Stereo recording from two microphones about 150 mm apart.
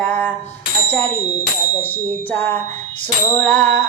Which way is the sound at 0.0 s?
10° left (ahead or behind).